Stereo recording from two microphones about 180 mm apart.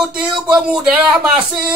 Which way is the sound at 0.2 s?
5° right (ahead or behind).